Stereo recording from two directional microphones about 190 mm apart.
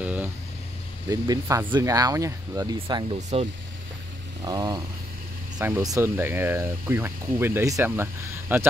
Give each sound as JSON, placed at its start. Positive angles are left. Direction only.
{"t": 0.0, "sound": "a sound", "side_deg": -5}
{"t": 1.0, "sound": "speech", "side_deg": -20}
{"t": 4.5, "sound": "vehicle", "side_deg": -20}
{"t": 5.6, "sound": "speech", "side_deg": -10}